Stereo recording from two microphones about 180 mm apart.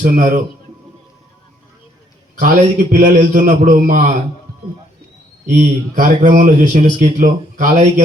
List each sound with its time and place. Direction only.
0.0 s speech: 45° right (ahead or behind)
2.4 s speech: 45° right (ahead or behind)
5.5 s speech: 45° right (ahead or behind)